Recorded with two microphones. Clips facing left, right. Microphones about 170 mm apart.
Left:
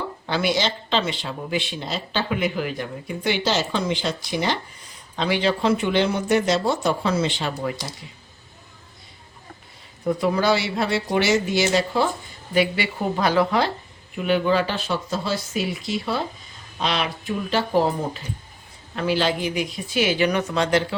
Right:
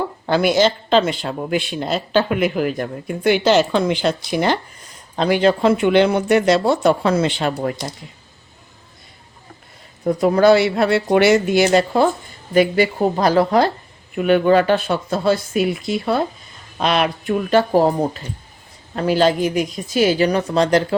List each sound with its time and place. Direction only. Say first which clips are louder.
0.3 s speech: right 7 dB; 45° right (ahead or behind)
10.1 s speech: right 7 dB; 45° right (ahead or behind)
14.2 s speech: right 6 dB; 55° right (ahead or behind); by 20.8 s 40° right (ahead or behind)